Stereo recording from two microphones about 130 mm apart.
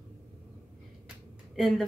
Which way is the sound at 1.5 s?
Centre (ahead or behind).